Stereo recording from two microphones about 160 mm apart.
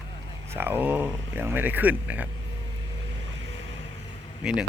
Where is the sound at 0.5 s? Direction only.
15° right (ahead or behind).